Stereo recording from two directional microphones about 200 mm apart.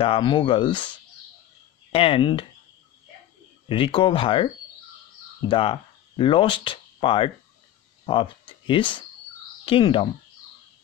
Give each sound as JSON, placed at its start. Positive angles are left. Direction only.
{"t": 0.0, "sound": "speech", "side_deg": 25}
{"t": 3.6, "sound": "speech", "side_deg": 25}
{"t": 5.5, "sound": "speech", "side_deg": 25}
{"t": 8.6, "sound": "speech", "side_deg": 25}